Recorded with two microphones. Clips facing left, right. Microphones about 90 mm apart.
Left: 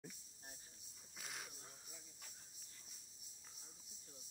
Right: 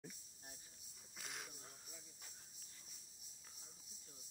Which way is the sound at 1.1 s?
Centre (ahead or behind).